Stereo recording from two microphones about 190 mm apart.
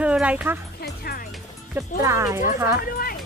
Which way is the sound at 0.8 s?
50° left (ahead or behind).